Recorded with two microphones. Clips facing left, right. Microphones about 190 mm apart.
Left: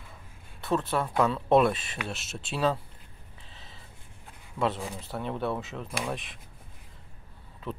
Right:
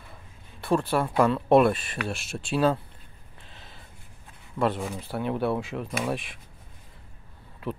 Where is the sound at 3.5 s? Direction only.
Centre (ahead or behind).